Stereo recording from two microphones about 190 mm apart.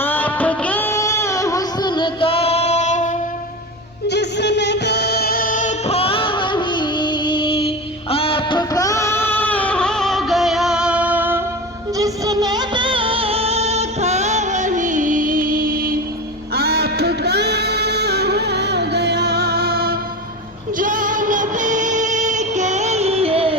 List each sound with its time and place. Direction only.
0.0 s music: 10° left (ahead or behind); by 3.1 s 40° left (ahead or behind)
4.1 s music: 65° left (ahead or behind); by 23.6 s 30° right (ahead or behind)